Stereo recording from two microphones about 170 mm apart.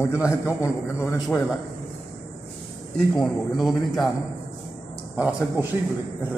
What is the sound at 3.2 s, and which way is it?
Speech, centre (ahead or behind).